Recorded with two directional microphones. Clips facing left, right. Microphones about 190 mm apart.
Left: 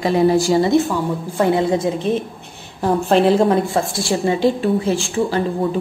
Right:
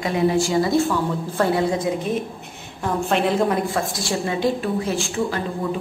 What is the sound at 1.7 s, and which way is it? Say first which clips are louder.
A woman's voice: left 4 dB; 30° left (ahead or behind).